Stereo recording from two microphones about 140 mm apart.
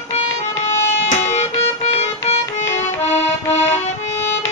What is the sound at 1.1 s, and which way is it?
Music, 55° left (ahead or behind).